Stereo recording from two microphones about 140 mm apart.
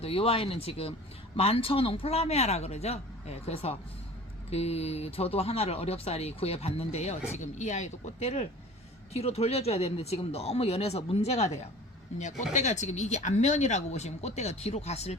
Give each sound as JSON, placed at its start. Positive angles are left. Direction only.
{"t": 0.0, "sound": "speech", "side_deg": 45}